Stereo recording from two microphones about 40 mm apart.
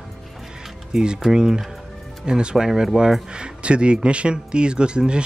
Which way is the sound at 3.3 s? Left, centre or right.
Right.